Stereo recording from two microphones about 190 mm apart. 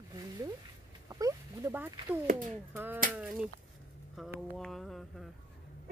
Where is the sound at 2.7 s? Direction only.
10° right (ahead or behind).